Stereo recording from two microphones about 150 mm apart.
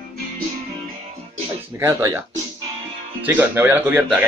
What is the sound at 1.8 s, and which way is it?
Speech, 20° right (ahead or behind).